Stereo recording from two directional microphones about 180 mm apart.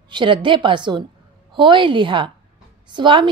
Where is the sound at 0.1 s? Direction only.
25° right (ahead or behind).